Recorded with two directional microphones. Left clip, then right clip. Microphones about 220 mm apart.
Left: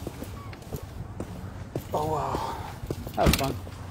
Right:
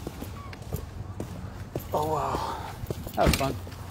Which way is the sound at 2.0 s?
5° right (ahead or behind).